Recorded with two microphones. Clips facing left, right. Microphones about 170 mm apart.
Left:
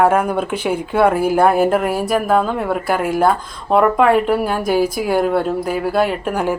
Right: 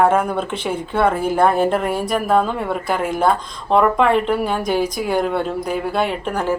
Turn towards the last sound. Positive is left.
turn(degrees=10)  # may be behind; listen again after turning